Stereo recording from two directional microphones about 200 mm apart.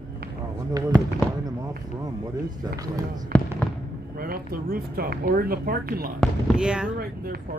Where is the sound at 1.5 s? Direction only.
20° right (ahead or behind).